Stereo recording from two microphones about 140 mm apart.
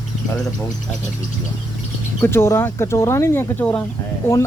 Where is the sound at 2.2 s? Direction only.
15° left (ahead or behind).